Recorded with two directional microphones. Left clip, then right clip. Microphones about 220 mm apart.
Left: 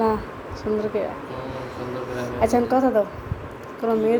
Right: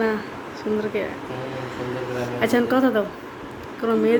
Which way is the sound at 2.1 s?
10° right (ahead or behind).